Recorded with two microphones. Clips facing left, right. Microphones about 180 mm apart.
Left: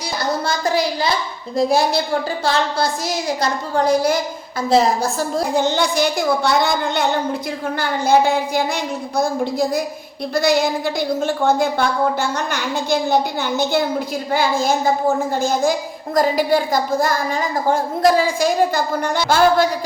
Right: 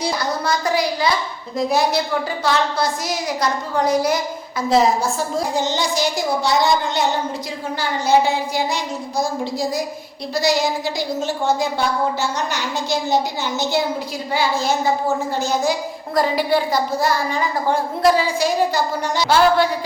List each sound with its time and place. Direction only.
0.4 s a woman's voice: 25° left (ahead or behind)
5.5 s a woman's voice: 55° left (ahead or behind)